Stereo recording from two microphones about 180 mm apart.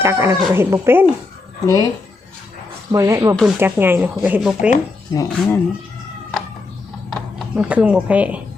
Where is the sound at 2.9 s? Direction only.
15° right (ahead or behind).